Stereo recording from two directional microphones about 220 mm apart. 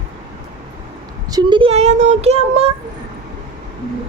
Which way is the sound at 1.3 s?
20° right (ahead or behind).